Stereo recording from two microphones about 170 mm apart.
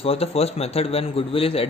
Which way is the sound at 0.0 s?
35° left (ahead or behind).